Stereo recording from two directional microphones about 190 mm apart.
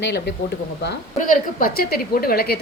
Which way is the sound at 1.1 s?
45° left (ahead or behind).